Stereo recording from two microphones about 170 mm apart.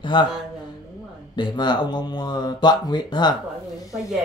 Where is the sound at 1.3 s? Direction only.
25° left (ahead or behind).